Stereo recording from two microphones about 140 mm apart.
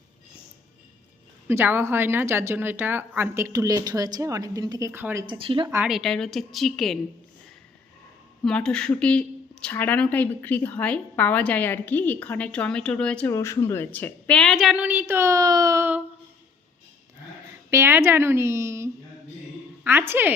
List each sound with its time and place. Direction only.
1.5 s a woman's voice: 15° right (ahead or behind)
4.9 s a woman's voice: 15° right (ahead or behind)
5.3 s speech: 35° right (ahead or behind)
5.8 s a woman's voice: centre (ahead or behind)
8.4 s speech: 5° left (ahead or behind)
13.3 s a woman's voice: 20° left (ahead or behind); by 15.9 s 25° right (ahead or behind)
17.7 s a woman's voice: 20° right (ahead or behind)